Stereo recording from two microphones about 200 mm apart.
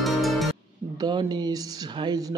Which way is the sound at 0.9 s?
20° right (ahead or behind).